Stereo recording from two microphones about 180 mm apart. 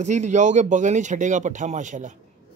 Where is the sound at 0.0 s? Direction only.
40° right (ahead or behind).